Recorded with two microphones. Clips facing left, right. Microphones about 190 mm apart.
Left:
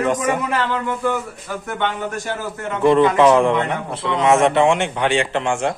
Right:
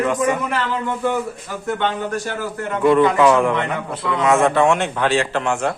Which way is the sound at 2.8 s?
30° left (ahead or behind).